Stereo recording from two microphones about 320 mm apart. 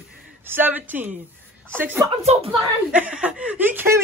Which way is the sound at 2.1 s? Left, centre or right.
Centre.